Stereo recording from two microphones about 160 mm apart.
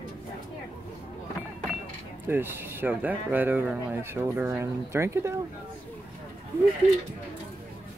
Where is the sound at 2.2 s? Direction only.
15° right (ahead or behind).